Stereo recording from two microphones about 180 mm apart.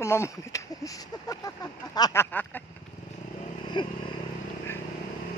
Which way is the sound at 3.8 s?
25° left (ahead or behind).